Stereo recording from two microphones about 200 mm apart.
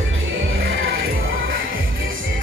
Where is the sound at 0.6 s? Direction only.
65° right (ahead or behind).